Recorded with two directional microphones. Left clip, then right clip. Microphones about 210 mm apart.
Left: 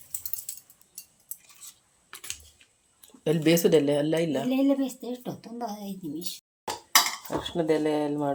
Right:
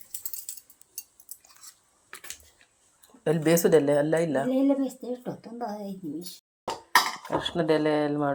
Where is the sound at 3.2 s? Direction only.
20° left (ahead or behind).